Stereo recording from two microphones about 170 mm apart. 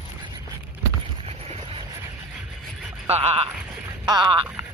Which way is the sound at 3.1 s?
40° right (ahead or behind).